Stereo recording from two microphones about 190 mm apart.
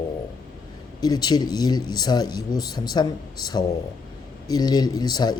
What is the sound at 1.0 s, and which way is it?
Speech, 20° left (ahead or behind).